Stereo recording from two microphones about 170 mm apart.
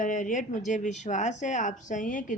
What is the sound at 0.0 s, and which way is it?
Speech, 50° left (ahead or behind).